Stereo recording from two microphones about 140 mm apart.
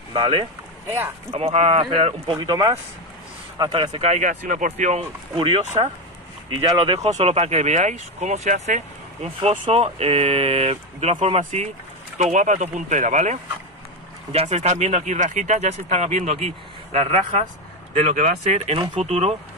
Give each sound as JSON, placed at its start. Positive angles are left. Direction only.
{"t": 0.1, "sound": "speech", "side_deg": -35}
{"t": 0.8, "sound": "speech", "side_deg": -15}
{"t": 1.3, "sound": "speech", "side_deg": -50}
{"t": 2.5, "sound": "speech", "side_deg": -30}
{"t": 5.3, "sound": "speech", "side_deg": -40}
{"t": 6.8, "sound": "speech", "side_deg": -50}
{"t": 14.3, "sound": "speech", "side_deg": -50}